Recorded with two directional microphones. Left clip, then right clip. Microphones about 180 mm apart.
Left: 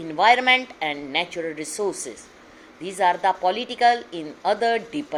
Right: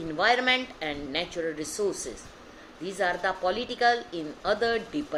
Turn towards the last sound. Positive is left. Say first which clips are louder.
# left 5 dB
turn(degrees=25)  # may be behind; listen again after turning